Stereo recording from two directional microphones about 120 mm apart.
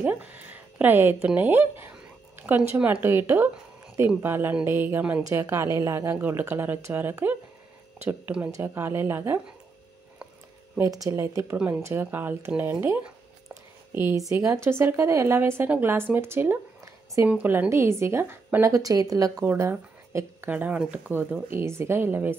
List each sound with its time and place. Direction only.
0.0 s a woman's voice: 15° right (ahead or behind)
10.8 s a woman's voice: 30° right (ahead or behind)
11.5 s a woman's voice: 10° right (ahead or behind); by 19.4 s 30° right (ahead or behind)
19.4 s speech: 15° right (ahead or behind)
20.4 s speech: 10° right (ahead or behind)